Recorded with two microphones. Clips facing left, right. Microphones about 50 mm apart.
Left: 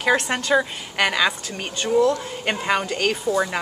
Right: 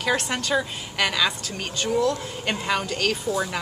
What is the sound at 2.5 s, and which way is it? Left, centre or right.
Speech, left.